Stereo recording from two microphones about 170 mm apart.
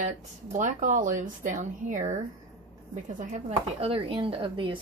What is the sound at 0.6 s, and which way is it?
Speech, 50° right (ahead or behind).